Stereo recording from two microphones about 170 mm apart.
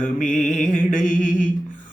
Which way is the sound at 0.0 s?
50° left (ahead or behind).